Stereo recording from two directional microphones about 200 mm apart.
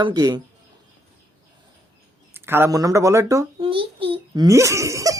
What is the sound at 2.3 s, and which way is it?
A child's voice, 10° right (ahead or behind).